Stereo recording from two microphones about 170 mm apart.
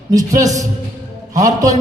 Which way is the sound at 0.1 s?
20° right (ahead or behind).